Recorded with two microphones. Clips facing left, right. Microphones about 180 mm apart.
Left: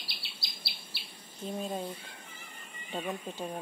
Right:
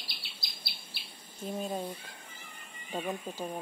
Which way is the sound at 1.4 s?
5° right (ahead or behind).